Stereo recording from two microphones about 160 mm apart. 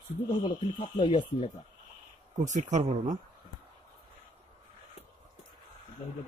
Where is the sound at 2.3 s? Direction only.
50° right (ahead or behind).